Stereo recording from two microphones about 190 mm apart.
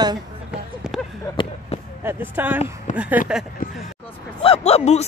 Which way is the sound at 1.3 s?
25° left (ahead or behind).